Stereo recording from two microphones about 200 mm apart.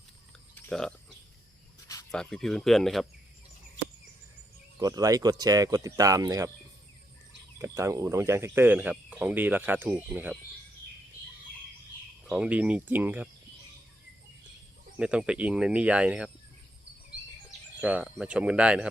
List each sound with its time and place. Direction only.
0.5 s a sound: 5° left (ahead or behind)
2.0 s speech: centre (ahead or behind)
4.8 s speech: 20° right (ahead or behind)
7.6 s speech: 15° right (ahead or behind)
12.2 s speech: 5° right (ahead or behind)
14.9 s speech: 5° right (ahead or behind)
17.7 s speech: 5° right (ahead or behind)